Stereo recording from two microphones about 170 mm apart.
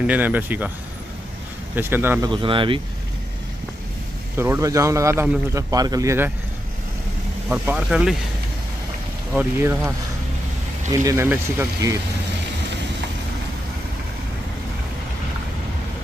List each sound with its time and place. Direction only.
0.0 s a man's voice: 10° right (ahead or behind)
1.8 s a man's voice: 10° right (ahead or behind)
2.2 s speech: 30° right (ahead or behind)
4.4 s a man's voice: 15° right (ahead or behind)
7.4 s speech: 10° right (ahead or behind)
9.3 s a man's voice: 10° right (ahead or behind)